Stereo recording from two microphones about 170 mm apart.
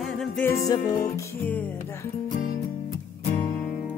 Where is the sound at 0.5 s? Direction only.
20° left (ahead or behind).